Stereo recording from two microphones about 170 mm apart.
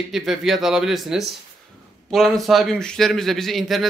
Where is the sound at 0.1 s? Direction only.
Centre (ahead or behind).